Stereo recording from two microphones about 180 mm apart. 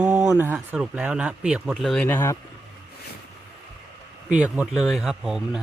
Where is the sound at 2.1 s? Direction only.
15° left (ahead or behind).